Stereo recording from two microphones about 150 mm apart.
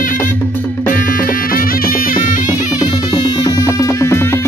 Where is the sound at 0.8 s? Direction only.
65° left (ahead or behind).